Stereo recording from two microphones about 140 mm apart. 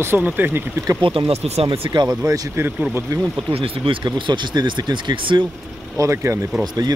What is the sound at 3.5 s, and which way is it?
Speech, 40° right (ahead or behind).